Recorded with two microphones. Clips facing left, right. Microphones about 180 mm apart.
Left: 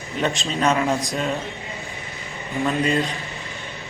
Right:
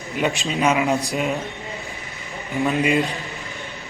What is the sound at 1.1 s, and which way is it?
Speech, 15° right (ahead or behind).